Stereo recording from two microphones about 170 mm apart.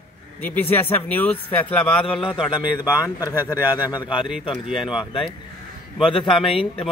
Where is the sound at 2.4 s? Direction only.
5° right (ahead or behind).